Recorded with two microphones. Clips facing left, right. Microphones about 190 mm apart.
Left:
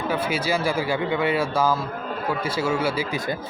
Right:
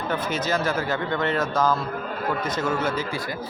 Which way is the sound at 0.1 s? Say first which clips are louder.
Even; 10° left (ahead or behind).